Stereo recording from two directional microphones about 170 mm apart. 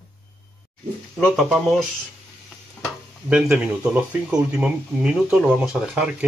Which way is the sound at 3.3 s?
5° right (ahead or behind).